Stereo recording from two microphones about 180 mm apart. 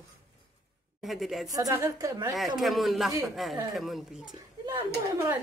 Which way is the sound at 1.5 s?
20° right (ahead or behind).